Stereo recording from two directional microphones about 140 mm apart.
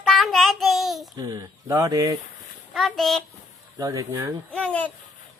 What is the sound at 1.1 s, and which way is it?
Speech, 25° right (ahead or behind).